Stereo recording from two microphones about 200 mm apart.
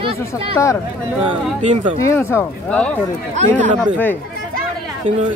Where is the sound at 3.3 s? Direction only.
35° right (ahead or behind).